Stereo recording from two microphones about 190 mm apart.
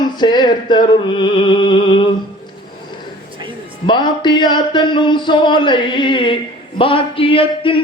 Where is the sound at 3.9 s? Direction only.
25° left (ahead or behind).